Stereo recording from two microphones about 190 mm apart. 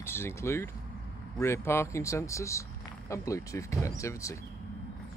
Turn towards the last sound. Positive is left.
turn(degrees=15)  # may be behind; listen again after turning